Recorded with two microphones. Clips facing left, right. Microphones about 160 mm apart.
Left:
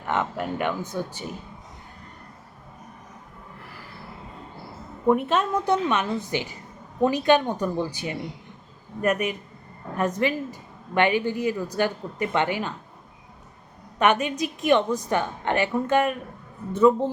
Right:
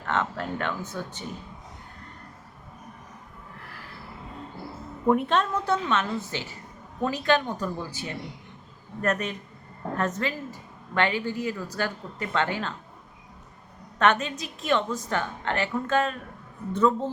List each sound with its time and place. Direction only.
0.0 s a woman's voice: 15° left (ahead or behind)
5.0 s a woman's voice: 5° left (ahead or behind)
14.0 s a woman's voice: 15° left (ahead or behind)